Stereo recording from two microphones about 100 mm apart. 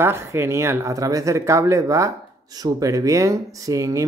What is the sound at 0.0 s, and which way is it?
Speech, 25° right (ahead or behind).